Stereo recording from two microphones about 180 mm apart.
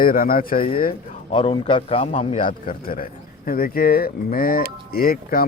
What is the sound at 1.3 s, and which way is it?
A man's voice, 30° left (ahead or behind).